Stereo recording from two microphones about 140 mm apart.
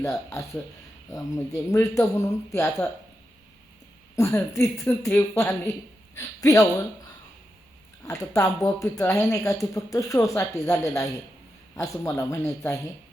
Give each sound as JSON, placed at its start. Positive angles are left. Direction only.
{"t": 0.0, "sound": "speech", "side_deg": 20}
{"t": 4.1, "sound": "a woman's voice", "side_deg": 20}
{"t": 8.0, "sound": "speech", "side_deg": 25}